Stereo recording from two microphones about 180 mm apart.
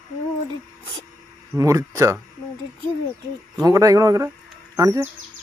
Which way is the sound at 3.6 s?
20° right (ahead or behind).